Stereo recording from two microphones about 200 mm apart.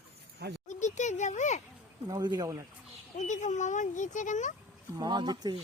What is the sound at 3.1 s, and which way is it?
Speech, 35° left (ahead or behind).